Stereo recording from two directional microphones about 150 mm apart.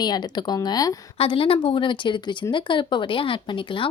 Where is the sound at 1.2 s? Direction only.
40° left (ahead or behind).